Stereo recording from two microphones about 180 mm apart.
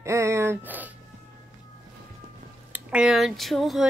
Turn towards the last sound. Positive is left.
turn(degrees=0)  # may be behind; listen again after turning